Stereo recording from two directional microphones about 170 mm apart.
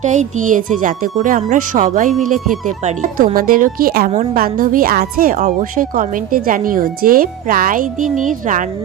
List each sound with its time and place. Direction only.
0.0 s a woman's voice: 45° right (ahead or behind)